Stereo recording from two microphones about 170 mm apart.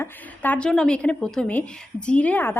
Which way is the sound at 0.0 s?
10° left (ahead or behind).